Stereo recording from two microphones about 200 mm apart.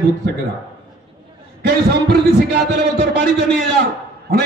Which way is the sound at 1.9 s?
55° right (ahead or behind).